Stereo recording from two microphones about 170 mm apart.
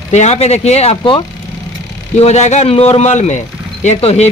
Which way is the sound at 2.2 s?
40° left (ahead or behind).